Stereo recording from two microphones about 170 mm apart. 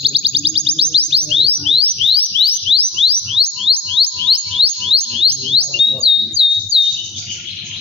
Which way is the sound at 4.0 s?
Centre (ahead or behind).